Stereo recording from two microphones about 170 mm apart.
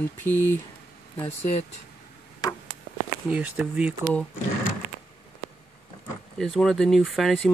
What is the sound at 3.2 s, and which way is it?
Speech, 10° right (ahead or behind).